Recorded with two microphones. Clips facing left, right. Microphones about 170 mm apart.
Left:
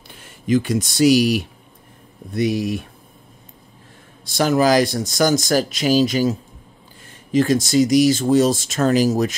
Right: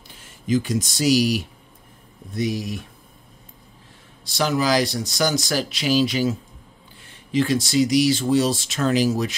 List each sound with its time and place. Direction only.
0.5 s speech: 60° left (ahead or behind)
4.2 s speech: 50° left (ahead or behind)